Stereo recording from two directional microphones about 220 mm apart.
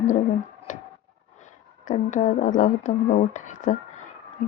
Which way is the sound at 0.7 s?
35° left (ahead or behind).